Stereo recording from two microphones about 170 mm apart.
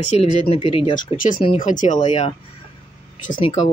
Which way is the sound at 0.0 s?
35° left (ahead or behind).